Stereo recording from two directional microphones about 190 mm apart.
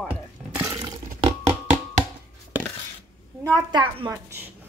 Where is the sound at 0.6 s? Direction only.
15° right (ahead or behind).